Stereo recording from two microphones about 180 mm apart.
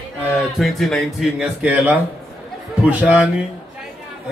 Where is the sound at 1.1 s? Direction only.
5° right (ahead or behind).